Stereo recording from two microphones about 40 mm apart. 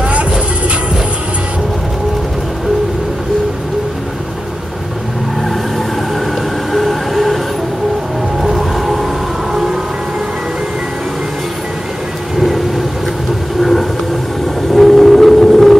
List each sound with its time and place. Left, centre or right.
0.0 s music: right
6.7 s train: centre
8.4 s train: centre
9.5 s siren: centre
12.4 s thunder: centre
13.6 s train: centre
14.7 s vehicle: centre